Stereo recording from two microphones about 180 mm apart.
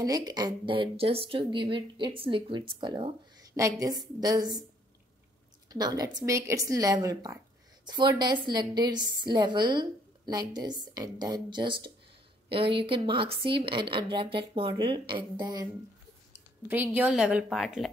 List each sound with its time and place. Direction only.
0.0 s a woman's voice: 20° right (ahead or behind)
5.7 s a woman's voice: 20° right (ahead or behind)
16.6 s a woman's voice: 10° right (ahead or behind)